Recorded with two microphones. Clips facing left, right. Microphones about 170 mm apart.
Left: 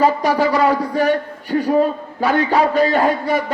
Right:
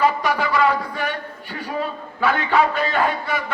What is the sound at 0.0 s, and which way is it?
A man's voice, 40° left (ahead or behind).